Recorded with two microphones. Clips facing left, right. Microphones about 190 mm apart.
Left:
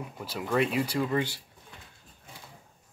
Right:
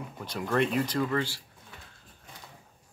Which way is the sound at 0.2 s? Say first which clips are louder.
Even; 5° left (ahead or behind).